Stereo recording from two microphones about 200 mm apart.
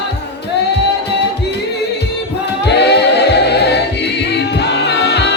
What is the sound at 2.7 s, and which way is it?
A capella, 55° left (ahead or behind).